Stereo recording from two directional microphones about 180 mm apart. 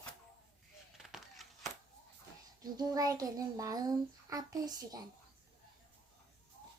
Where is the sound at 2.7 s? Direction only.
20° right (ahead or behind).